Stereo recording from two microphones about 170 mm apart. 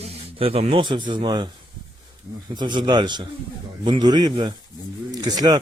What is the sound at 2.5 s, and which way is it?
A man's voice, 25° right (ahead or behind).